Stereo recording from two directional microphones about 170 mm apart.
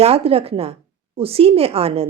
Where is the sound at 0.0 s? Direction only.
35° right (ahead or behind).